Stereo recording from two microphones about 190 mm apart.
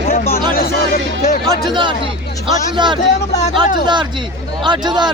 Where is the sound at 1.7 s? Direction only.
25° right (ahead or behind).